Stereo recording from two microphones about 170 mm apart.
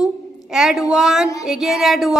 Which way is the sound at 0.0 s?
5° right (ahead or behind).